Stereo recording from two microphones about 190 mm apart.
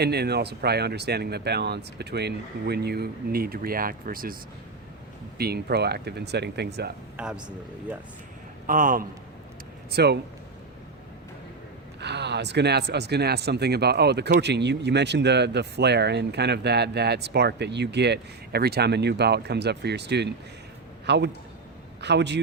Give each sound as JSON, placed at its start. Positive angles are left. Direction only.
{"t": 0.0, "sound": "speech", "side_deg": -60}
{"t": 5.4, "sound": "speech", "side_deg": -55}
{"t": 7.2, "sound": "speech", "side_deg": -5}
{"t": 8.6, "sound": "a man's voice", "side_deg": -45}
{"t": 9.9, "sound": "speech", "side_deg": -60}
{"t": 11.9, "sound": "speech", "side_deg": -65}